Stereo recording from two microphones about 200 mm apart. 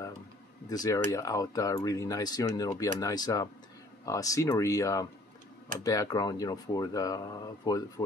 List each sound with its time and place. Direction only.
0.7 s speech: 20° left (ahead or behind)